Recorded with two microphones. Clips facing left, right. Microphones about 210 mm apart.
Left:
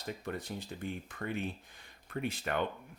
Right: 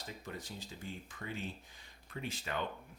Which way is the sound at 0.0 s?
60° left (ahead or behind).